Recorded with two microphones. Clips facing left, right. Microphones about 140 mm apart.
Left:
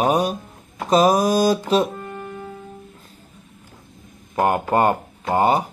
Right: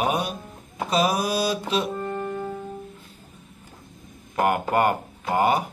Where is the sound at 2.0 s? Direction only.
35° right (ahead or behind).